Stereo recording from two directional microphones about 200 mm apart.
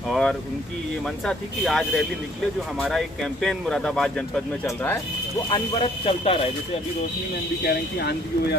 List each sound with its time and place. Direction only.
0.1 s speech: 5° left (ahead or behind)
5.5 s speech: 30° left (ahead or behind)
7.6 s speech: 55° left (ahead or behind)